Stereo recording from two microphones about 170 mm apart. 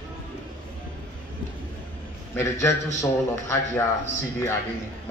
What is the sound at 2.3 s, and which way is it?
Speech, 15° left (ahead or behind).